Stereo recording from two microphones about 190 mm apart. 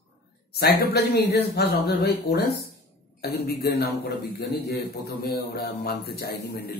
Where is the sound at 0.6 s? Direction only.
55° left (ahead or behind).